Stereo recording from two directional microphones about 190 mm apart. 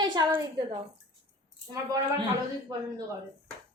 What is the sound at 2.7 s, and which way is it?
Speech, 20° right (ahead or behind).